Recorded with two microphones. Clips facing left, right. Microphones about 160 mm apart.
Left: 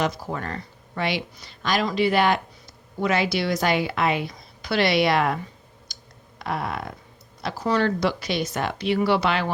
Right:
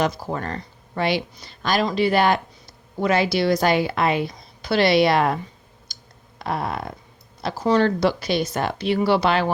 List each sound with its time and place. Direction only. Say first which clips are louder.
0.0 s a woman's voice: right 3 dB; 35° right (ahead or behind)
5.9 s clicking: even; 30° right (ahead or behind)
6.4 s a sound: right 2 dB; 35° right (ahead or behind)
7.4 s a woman's voice: right 4 dB; 30° right (ahead or behind)